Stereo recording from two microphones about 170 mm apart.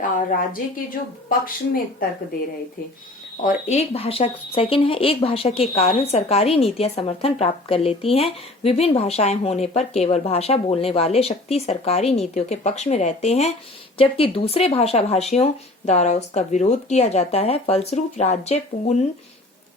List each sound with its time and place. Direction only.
1.3 s speech: 55° left (ahead or behind)
3.4 s speech: 40° left (ahead or behind)